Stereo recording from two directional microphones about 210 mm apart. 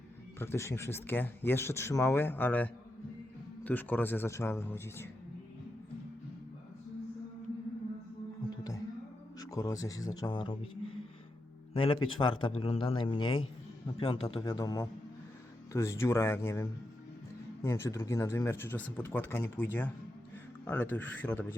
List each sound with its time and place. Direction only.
0.3 s speech: 10° left (ahead or behind)
8.4 s music: 15° left (ahead or behind)
9.4 s a man's voice: 15° left (ahead or behind)